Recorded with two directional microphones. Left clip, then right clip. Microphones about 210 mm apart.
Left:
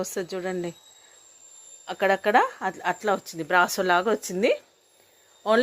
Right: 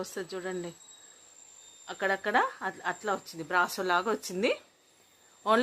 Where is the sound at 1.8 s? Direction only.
35° left (ahead or behind).